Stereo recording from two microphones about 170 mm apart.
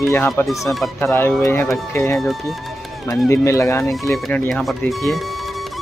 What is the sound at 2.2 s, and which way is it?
Speech, centre (ahead or behind).